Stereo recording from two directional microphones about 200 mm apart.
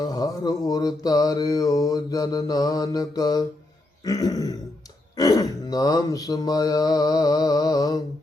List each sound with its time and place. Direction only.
0.0 s mantra: 20° left (ahead or behind)
4.0 s throat clearing: 20° left (ahead or behind)
5.1 s mantra: 20° left (ahead or behind)